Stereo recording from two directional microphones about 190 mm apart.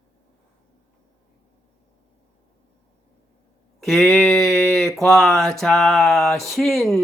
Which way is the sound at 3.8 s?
5° left (ahead or behind).